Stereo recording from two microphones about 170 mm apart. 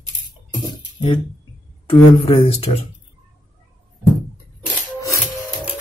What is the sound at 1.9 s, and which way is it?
Speech, 30° left (ahead or behind).